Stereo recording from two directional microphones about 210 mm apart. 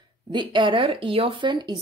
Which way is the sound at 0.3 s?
20° right (ahead or behind).